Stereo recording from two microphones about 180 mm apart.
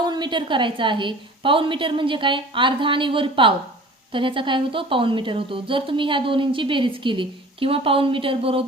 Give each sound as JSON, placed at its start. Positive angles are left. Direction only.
{"t": 0.0, "sound": "a woman's voice", "side_deg": -25}